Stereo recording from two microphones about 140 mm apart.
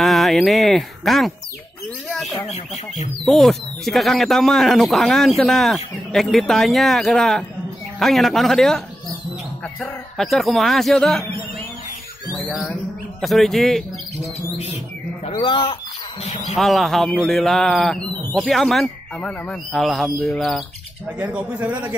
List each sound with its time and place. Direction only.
0.0 s speech: centre (ahead or behind)
2.4 s speech: 55° left (ahead or behind)
3.3 s speech: centre (ahead or behind)
10.1 s speech: centre (ahead or behind)
12.4 s speech: centre (ahead or behind)
15.3 s speech: 35° left (ahead or behind)
16.5 s speech: centre (ahead or behind)
21.2 s a man's voice: 10° right (ahead or behind)